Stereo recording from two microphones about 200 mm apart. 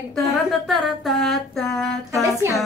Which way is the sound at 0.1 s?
Centre (ahead or behind).